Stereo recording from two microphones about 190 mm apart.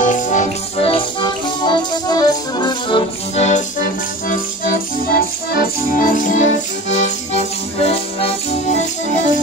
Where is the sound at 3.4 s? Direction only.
40° left (ahead or behind).